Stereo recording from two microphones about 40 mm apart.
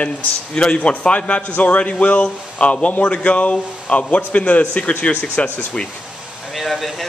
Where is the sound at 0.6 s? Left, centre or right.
Left.